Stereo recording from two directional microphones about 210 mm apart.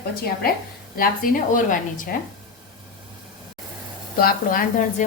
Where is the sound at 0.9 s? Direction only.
40° left (ahead or behind).